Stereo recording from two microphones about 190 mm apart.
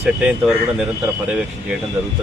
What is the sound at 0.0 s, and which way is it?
Speech, 5° right (ahead or behind).